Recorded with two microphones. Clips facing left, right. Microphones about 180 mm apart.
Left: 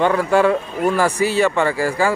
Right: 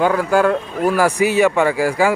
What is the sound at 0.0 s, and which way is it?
Speech, centre (ahead or behind).